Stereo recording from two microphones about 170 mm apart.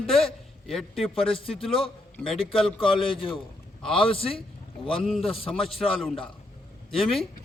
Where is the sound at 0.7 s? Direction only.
Centre (ahead or behind).